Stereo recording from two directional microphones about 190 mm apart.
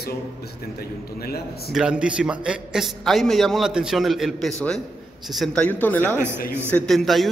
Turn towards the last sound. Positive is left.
turn(degrees=0)  # may be behind; listen again after turning